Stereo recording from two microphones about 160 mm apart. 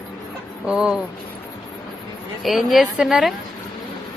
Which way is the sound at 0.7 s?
5° right (ahead or behind).